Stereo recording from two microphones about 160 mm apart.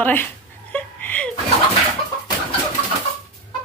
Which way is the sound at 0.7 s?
10° left (ahead or behind).